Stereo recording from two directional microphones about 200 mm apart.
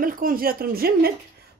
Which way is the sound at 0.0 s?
45° right (ahead or behind).